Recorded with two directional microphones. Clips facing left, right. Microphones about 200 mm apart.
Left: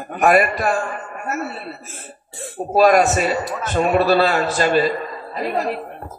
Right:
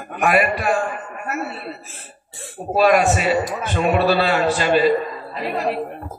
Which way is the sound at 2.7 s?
40° left (ahead or behind).